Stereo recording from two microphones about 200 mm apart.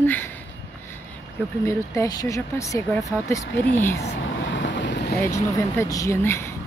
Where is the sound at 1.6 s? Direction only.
15° left (ahead or behind).